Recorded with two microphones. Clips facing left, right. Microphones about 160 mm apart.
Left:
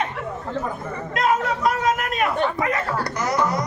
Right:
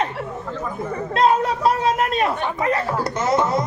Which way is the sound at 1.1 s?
30° right (ahead or behind).